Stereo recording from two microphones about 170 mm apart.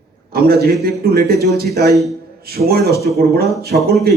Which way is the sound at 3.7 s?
55° right (ahead or behind).